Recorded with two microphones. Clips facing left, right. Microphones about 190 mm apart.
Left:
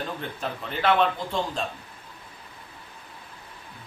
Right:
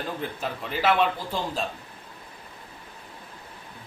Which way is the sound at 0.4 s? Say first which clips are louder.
Left 1 dB; 5° right (ahead or behind).